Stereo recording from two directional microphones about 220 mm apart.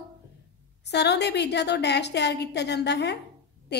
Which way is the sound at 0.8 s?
50° left (ahead or behind).